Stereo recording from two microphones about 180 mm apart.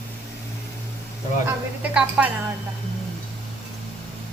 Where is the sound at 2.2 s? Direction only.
5° right (ahead or behind).